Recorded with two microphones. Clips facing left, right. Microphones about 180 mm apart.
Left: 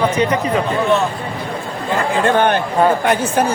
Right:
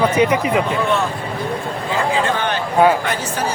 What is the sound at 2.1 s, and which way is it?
Speech, 55° left (ahead or behind).